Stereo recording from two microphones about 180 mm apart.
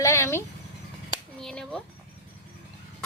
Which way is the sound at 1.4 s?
5° left (ahead or behind).